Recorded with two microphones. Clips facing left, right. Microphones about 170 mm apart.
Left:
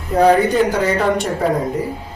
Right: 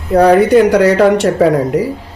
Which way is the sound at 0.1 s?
70° right (ahead or behind).